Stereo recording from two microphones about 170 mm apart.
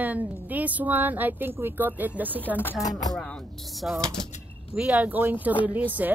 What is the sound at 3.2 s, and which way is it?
Speech, 5° left (ahead or behind).